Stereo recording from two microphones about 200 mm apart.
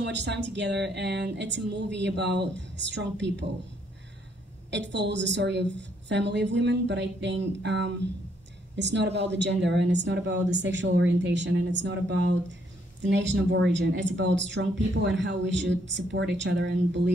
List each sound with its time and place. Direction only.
0.0 s speech: 60° right (ahead or behind)
4.6 s speech: 60° right (ahead or behind)